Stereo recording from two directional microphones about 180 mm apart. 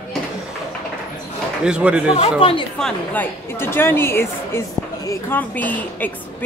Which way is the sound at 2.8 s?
10° left (ahead or behind).